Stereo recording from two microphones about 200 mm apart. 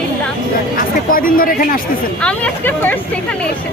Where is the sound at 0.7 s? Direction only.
45° left (ahead or behind).